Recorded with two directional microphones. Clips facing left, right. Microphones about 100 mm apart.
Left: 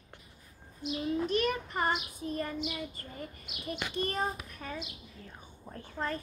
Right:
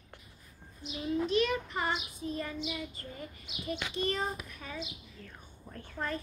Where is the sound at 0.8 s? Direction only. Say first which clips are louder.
Left 1 dB; 50° left (ahead or behind).